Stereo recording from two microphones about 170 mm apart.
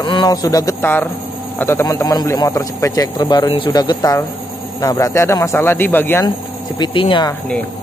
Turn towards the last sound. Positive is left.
turn(degrees=30)  # may be behind; listen again after turning